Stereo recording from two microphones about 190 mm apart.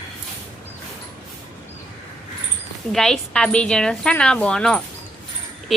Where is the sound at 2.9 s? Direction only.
5° left (ahead or behind).